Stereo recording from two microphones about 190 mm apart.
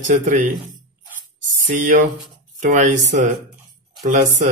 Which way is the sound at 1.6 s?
45° right (ahead or behind).